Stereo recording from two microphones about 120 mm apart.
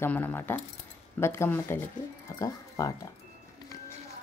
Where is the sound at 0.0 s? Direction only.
15° left (ahead or behind).